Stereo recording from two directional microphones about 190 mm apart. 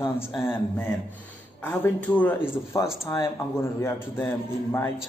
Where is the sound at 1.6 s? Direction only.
10° left (ahead or behind).